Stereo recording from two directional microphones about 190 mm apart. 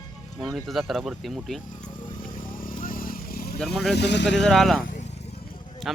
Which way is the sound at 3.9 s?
65° left (ahead or behind).